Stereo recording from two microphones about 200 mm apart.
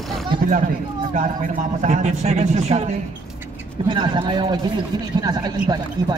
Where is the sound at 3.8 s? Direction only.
25° right (ahead or behind).